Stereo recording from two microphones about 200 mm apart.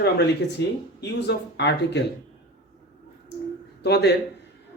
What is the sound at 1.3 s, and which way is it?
Speech, 60° left (ahead or behind).